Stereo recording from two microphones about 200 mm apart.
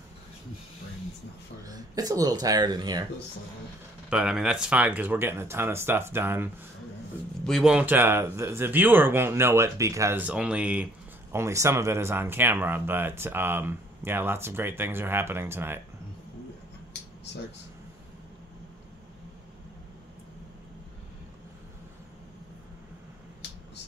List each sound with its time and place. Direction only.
1.6 s speech: 20° right (ahead or behind)
4.1 s speech: 5° right (ahead or behind)